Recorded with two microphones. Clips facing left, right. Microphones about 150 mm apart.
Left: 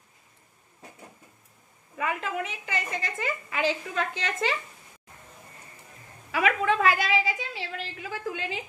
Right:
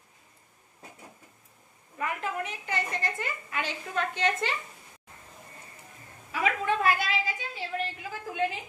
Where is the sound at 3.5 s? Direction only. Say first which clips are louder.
Left 4 dB; 90° left.